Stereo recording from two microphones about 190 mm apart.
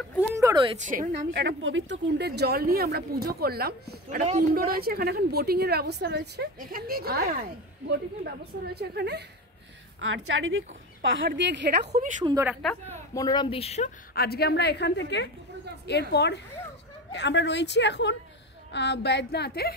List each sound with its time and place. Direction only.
0.3 s a sound: 15° right (ahead or behind)
0.9 s a woman's voice: 40° right (ahead or behind)
1.3 s speech: 75° right (ahead or behind); by 7.2 s 55° right (ahead or behind)
8.6 s speech: 60° right (ahead or behind)
9.9 s a woman's voice: 80° right
12.2 s a woman's voice: 25° right (ahead or behind)
12.6 s a woman's voice: 10° left (ahead or behind); by 13.8 s 30° left (ahead or behind)
14.1 s a woman's voice: 55° left (ahead or behind)